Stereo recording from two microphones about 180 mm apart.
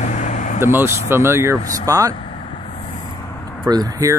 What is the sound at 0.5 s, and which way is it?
Speech, 15° right (ahead or behind).